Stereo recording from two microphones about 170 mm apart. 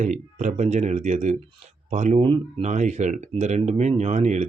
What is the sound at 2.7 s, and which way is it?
Speech, 45° right (ahead or behind).